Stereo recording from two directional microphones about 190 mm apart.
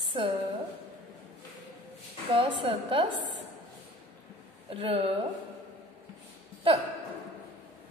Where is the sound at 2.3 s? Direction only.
25° right (ahead or behind).